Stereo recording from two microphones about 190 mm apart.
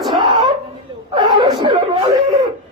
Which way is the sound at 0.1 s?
25° right (ahead or behind).